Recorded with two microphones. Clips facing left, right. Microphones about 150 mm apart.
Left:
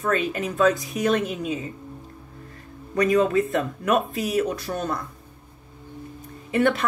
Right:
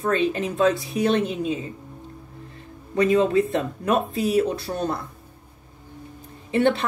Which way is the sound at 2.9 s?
30° right (ahead or behind).